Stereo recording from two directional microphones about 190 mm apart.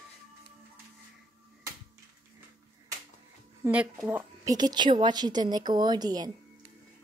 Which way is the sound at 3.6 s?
5° right (ahead or behind).